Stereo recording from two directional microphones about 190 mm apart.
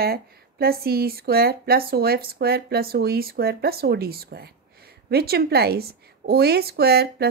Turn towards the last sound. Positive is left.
turn(degrees=-55)  # may be behind; listen again after turning